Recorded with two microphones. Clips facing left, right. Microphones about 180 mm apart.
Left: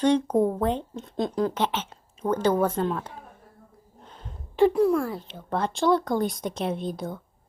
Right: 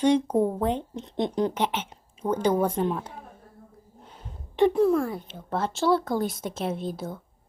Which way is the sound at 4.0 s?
10° right (ahead or behind).